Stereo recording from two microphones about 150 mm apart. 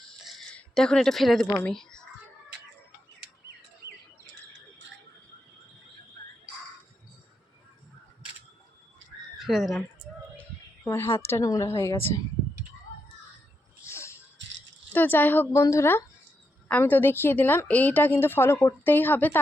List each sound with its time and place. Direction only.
0.3 s a sound: centre (ahead or behind)
1.5 s a woman's voice: 10° left (ahead or behind)
9.4 s speech: centre (ahead or behind)
10.8 s a woman's voice: 15° left (ahead or behind)
13.8 s music: 20° left (ahead or behind)
14.9 s a woman's voice: 10° left (ahead or behind)